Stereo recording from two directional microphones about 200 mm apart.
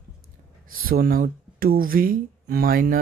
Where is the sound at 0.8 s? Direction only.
45° right (ahead or behind).